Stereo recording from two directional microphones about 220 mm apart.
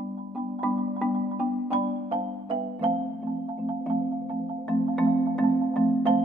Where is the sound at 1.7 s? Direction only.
25° right (ahead or behind).